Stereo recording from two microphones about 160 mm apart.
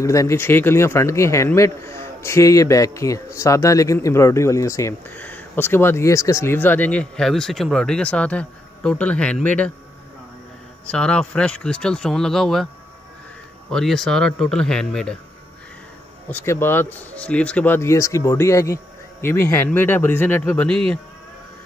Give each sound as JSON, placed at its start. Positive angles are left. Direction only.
{"t": 0.0, "sound": "speech", "side_deg": 20}
{"t": 10.9, "sound": "speech", "side_deg": 5}
{"t": 13.7, "sound": "speech", "side_deg": 0}
{"t": 16.3, "sound": "speech", "side_deg": 15}